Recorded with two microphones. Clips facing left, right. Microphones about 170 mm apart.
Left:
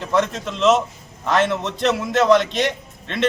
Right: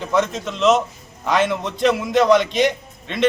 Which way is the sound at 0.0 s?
5° right (ahead or behind).